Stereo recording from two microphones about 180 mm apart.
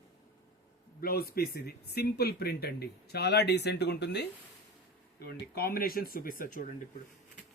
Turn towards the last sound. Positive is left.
turn(degrees=50)  # may be behind; listen again after turning